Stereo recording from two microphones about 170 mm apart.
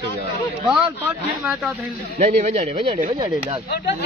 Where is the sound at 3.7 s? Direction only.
65° left (ahead or behind).